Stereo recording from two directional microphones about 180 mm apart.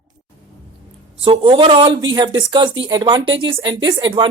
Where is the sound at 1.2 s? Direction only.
30° right (ahead or behind).